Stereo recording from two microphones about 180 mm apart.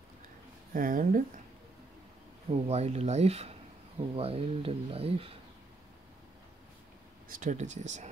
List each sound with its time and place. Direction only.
0.7 s speech: 50° right (ahead or behind)
2.5 s speech: 35° right (ahead or behind)
7.2 s speech: 45° right (ahead or behind)